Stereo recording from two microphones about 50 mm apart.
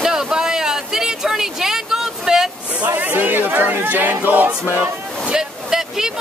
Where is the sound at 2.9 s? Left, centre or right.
Right.